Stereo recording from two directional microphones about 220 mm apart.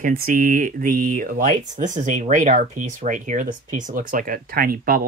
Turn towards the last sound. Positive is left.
turn(degrees=-40)  # may be behind; listen again after turning